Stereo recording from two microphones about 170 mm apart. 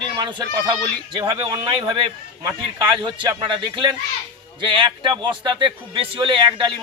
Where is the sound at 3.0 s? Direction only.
30° right (ahead or behind).